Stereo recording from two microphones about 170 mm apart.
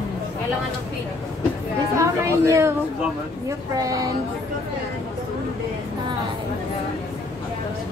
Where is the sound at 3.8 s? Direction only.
20° right (ahead or behind).